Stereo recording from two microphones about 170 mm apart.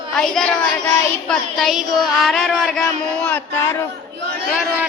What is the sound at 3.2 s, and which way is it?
Speech, 15° left (ahead or behind).